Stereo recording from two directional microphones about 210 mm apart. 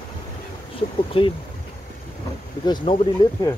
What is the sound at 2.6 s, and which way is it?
Speech, 20° left (ahead or behind).